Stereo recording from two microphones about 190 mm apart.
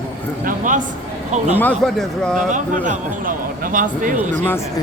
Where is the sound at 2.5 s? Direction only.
40° right (ahead or behind).